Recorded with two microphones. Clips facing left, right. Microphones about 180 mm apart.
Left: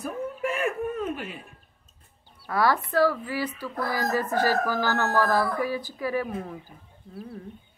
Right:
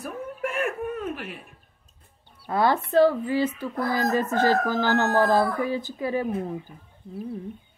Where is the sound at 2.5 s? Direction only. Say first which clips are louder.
Right 2 dB; 25° right (ahead or behind).